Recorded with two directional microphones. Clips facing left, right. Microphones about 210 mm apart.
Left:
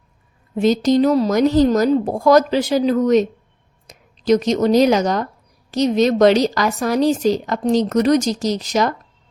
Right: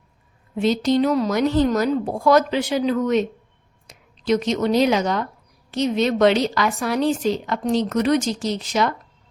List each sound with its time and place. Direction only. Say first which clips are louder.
0.5 s a woman's voice: left 4 dB; 40° left (ahead or behind)